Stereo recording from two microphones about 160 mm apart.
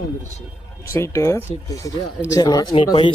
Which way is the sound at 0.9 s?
15° left (ahead or behind).